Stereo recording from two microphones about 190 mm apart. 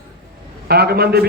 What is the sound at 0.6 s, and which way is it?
Speech, 55° right (ahead or behind).